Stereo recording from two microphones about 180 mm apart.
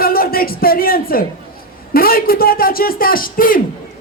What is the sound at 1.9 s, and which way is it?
Speech, 55° left (ahead or behind).